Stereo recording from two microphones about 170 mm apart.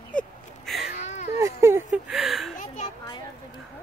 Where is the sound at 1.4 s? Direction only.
15° right (ahead or behind).